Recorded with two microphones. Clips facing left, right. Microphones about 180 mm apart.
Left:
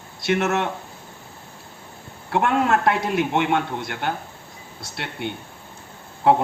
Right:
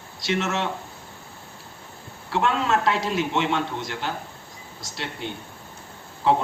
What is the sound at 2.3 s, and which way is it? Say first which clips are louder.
A man's voice: left 3 dB; 55° left (ahead or behind).